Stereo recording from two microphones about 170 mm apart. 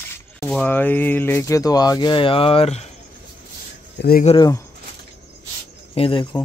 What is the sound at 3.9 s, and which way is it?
Speech, 65° left (ahead or behind).